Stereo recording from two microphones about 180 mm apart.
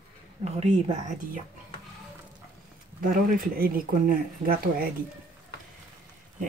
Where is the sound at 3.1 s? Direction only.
50° right (ahead or behind).